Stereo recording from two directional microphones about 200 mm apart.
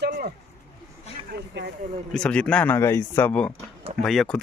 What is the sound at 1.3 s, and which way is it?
Speech, 55° right (ahead or behind).